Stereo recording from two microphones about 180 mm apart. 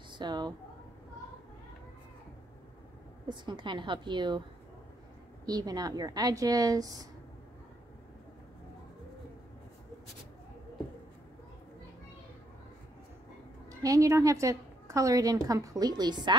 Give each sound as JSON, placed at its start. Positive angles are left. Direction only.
{"t": 0.1, "sound": "a sound", "side_deg": -25}
{"t": 3.3, "sound": "a woman's voice", "side_deg": -25}
{"t": 5.5, "sound": "a woman's voice", "side_deg": -20}
{"t": 13.7, "sound": "a woman's voice", "side_deg": -20}